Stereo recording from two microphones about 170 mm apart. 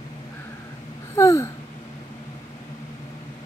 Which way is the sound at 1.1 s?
15° left (ahead or behind).